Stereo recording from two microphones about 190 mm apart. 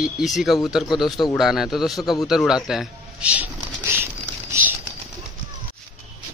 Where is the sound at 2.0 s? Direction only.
20° left (ahead or behind).